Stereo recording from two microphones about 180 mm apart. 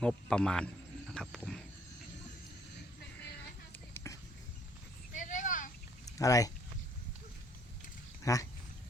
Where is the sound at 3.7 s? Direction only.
15° left (ahead or behind).